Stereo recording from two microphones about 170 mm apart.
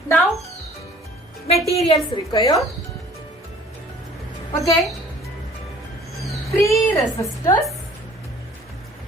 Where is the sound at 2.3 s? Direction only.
20° left (ahead or behind).